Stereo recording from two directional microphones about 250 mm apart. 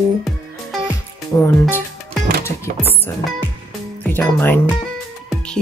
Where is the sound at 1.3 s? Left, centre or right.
Centre.